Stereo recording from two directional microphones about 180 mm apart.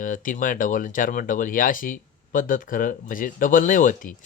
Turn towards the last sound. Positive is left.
turn(degrees=50)  # may be behind; listen again after turning